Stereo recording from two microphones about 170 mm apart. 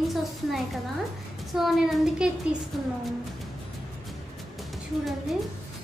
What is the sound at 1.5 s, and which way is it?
Speech, centre (ahead or behind).